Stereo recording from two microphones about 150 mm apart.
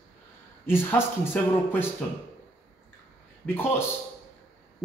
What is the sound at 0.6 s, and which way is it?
Speech, 15° left (ahead or behind).